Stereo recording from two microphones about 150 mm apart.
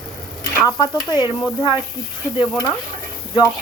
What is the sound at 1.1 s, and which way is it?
Speech, 30° left (ahead or behind).